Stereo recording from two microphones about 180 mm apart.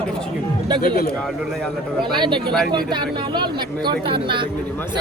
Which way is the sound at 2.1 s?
25° right (ahead or behind).